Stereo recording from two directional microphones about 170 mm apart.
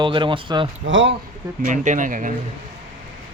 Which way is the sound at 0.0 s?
30° right (ahead or behind).